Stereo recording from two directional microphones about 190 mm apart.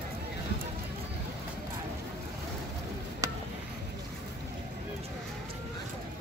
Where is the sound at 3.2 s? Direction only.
15° right (ahead or behind).